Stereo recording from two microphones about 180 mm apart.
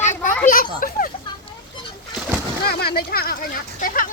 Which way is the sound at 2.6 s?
60° left (ahead or behind).